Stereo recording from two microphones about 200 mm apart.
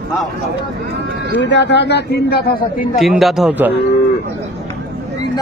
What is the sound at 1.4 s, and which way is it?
Speech, 60° left (ahead or behind).